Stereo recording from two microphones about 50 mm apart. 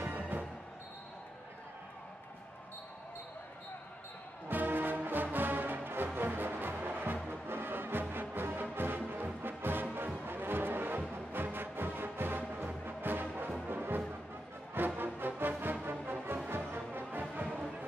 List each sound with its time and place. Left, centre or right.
0.0 s music: right
4.5 s music: right
17.2 s music: right